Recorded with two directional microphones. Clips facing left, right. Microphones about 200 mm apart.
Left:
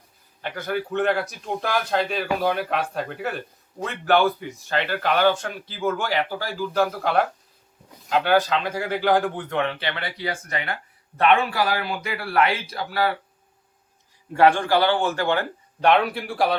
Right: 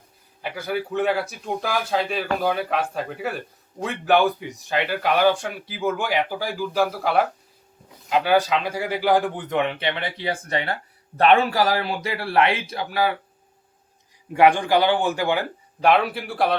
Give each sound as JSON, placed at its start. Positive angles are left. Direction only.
{"t": 0.4, "sound": "a man's voice", "side_deg": -5}
{"t": 14.3, "sound": "a man's voice", "side_deg": -15}